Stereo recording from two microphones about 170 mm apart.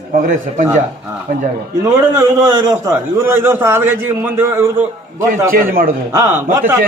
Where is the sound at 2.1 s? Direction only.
20° right (ahead or behind).